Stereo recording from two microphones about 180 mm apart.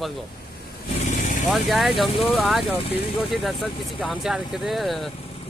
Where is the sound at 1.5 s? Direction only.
Centre (ahead or behind).